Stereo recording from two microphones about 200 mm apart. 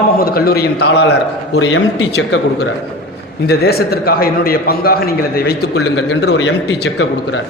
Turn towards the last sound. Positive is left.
turn(degrees=55)  # may be behind; listen again after turning